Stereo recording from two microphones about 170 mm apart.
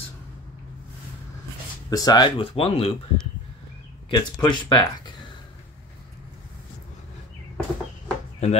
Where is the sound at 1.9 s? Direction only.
25° left (ahead or behind).